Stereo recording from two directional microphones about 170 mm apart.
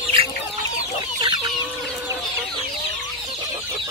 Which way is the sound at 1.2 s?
25° right (ahead or behind).